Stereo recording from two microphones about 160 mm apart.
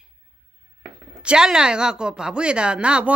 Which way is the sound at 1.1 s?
5° right (ahead or behind).